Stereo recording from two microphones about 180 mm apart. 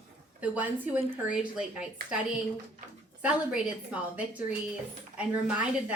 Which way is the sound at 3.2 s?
5° right (ahead or behind).